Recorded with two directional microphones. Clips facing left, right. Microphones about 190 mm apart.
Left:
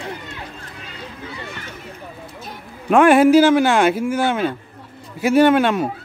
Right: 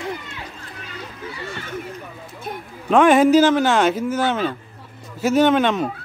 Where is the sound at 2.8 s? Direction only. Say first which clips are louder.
Left 2 dB; 10° left (ahead or behind).